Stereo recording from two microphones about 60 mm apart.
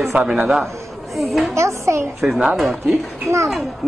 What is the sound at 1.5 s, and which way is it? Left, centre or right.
Speech, right.